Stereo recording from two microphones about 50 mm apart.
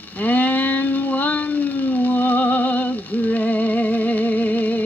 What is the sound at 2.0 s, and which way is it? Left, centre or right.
Music, left.